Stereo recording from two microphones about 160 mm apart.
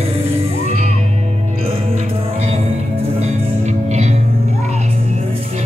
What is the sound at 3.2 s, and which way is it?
Music, 45° right (ahead or behind).